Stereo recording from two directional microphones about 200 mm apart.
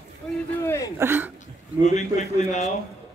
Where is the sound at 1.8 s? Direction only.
35° left (ahead or behind).